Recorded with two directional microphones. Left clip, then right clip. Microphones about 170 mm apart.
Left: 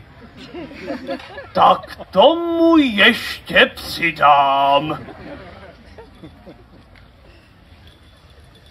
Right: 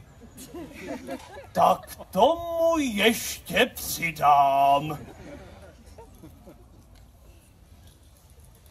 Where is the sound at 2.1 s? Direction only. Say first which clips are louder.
Left 9 dB; 25° right (ahead or behind).